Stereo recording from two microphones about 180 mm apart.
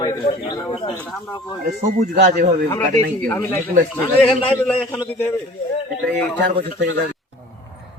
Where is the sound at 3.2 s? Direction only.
10° left (ahead or behind).